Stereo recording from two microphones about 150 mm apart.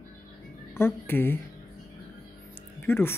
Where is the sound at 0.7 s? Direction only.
15° left (ahead or behind).